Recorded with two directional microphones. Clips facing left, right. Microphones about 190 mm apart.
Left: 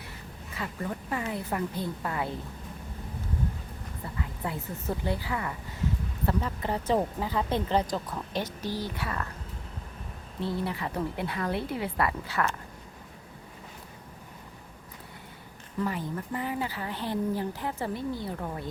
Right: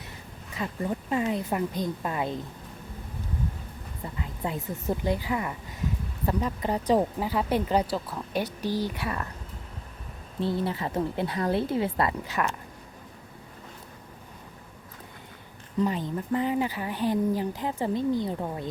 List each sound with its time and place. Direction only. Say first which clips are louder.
0.5 s speech: right 4 dB; 20° right (ahead or behind)
4.2 s speech: right 2 dB; 20° right (ahead or behind)
10.4 s speech: right 3 dB; 30° right (ahead or behind)
15.8 s speech: right 4 dB; 20° right (ahead or behind)